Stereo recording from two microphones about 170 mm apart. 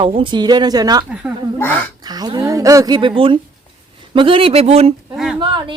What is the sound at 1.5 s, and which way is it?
Speech, 10° left (ahead or behind).